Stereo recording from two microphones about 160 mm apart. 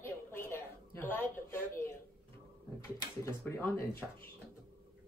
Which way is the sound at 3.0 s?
15° left (ahead or behind).